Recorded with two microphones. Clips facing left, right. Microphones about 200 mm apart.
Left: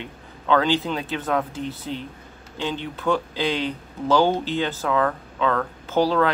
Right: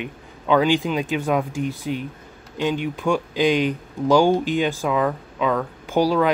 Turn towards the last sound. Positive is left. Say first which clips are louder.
# right 1 dB
turn(degrees=-15)  # may be behind; listen again after turning